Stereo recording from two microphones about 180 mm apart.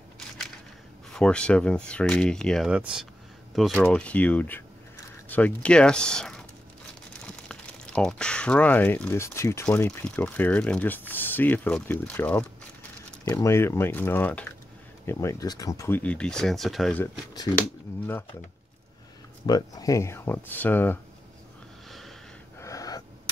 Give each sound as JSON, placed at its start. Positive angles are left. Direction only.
{"t": 1.1, "sound": "speech", "side_deg": 5}
{"t": 17.0, "sound": "speech", "side_deg": 20}
{"t": 19.4, "sound": "speech", "side_deg": 20}
{"t": 22.6, "sound": "gasp", "side_deg": 20}